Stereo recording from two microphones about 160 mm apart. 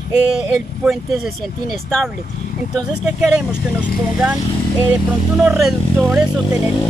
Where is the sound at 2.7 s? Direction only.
Centre (ahead or behind).